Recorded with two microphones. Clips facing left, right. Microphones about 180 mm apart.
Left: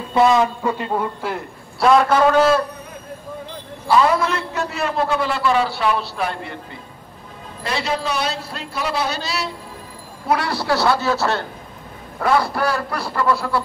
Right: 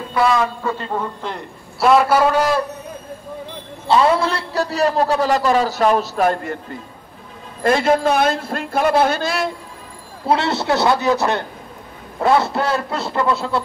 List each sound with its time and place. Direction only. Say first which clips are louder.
0.1 s a man's voice: left 2 dB; 20° left (ahead or behind); by 2.6 s 15° right (ahead or behind)
3.8 s a man's voice: right 1 dB; 25° right (ahead or behind); by 9.5 s 50° right (ahead or behind)
10.2 s a man's voice: right 3 dB; 25° right (ahead or behind)